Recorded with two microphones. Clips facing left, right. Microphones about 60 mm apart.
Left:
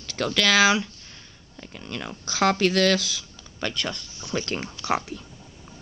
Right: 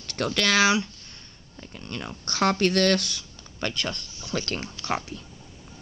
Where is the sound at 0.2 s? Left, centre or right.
Centre.